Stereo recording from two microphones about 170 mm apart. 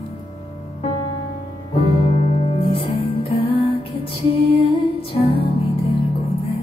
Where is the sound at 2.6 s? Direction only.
30° left (ahead or behind).